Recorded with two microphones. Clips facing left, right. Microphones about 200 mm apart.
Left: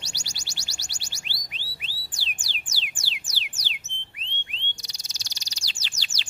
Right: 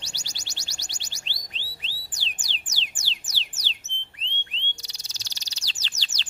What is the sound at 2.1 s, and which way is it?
Music, 10° left (ahead or behind).